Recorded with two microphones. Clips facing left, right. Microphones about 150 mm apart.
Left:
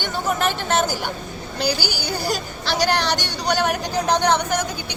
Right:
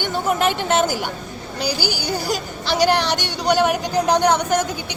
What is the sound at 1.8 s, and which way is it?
Speech, 45° right (ahead or behind).